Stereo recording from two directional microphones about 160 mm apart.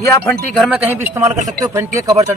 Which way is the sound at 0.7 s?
15° right (ahead or behind).